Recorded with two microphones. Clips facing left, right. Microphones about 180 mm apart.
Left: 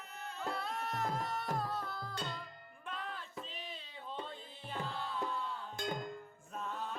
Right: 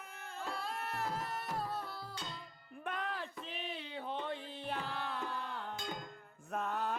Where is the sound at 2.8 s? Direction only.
65° right (ahead or behind).